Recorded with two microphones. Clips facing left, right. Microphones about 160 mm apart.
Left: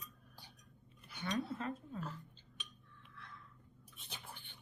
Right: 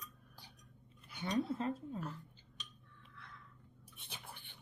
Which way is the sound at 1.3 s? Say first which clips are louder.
Right 3 dB; 30° right (ahead or behind).